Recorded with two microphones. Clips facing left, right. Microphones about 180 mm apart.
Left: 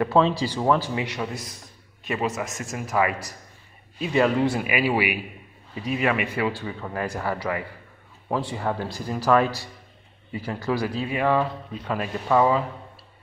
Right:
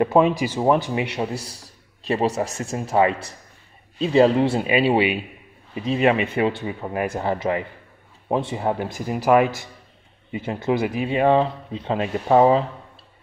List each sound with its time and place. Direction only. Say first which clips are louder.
0.0 s a man's voice: right 3 dB; 15° right (ahead or behind)